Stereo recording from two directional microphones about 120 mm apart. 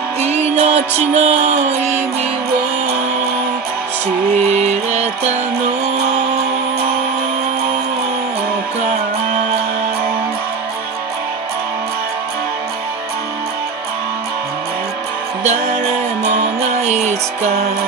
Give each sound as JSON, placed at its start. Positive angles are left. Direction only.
{"t": 0.2, "sound": "music", "side_deg": -60}
{"t": 4.6, "sound": "music", "side_deg": -70}
{"t": 16.8, "sound": "music", "side_deg": -70}